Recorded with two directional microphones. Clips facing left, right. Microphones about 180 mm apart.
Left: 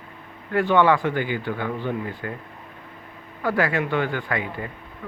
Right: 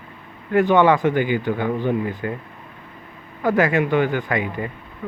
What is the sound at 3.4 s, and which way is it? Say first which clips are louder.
Speech: right 5 dB; 20° right (ahead or behind).